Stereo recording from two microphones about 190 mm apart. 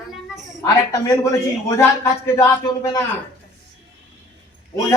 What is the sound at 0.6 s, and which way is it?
Speech, 20° left (ahead or behind).